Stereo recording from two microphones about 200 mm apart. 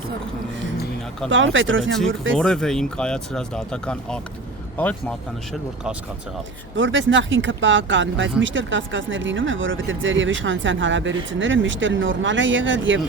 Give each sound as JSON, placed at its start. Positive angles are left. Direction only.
{"t": 1.3, "sound": "speech", "side_deg": -70}
{"t": 2.4, "sound": "speech", "side_deg": 5}
{"t": 6.7, "sound": "speech", "side_deg": -70}